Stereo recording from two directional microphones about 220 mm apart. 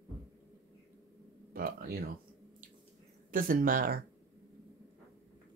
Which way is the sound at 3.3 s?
40° right (ahead or behind).